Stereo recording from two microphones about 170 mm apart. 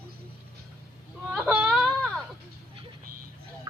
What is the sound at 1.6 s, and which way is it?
Whimper, 5° right (ahead or behind).